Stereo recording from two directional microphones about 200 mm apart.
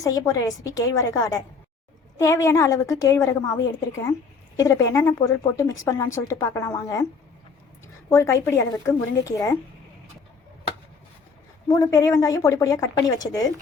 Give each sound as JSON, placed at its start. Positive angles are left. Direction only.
{"t": 0.0, "sound": "a woman's voice", "side_deg": 15}
{"t": 8.1, "sound": "a woman's voice", "side_deg": 15}
{"t": 11.7, "sound": "a woman's voice", "side_deg": 15}